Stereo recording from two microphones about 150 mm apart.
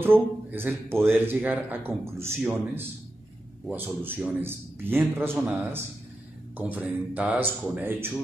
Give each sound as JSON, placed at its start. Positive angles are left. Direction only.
{"t": 0.0, "sound": "speech", "side_deg": -15}